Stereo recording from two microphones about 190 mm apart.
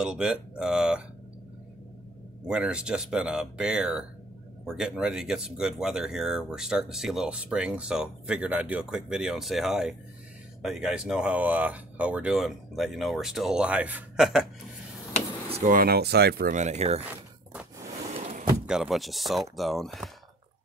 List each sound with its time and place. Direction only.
0.0 s speech: 5° right (ahead or behind)
2.4 s speech: 5° right (ahead or behind)
15.5 s speech: 45° right (ahead or behind)
17.0 s a sound: 5° right (ahead or behind)
17.8 s a sound: 35° right (ahead or behind)
18.7 s speech: centre (ahead or behind)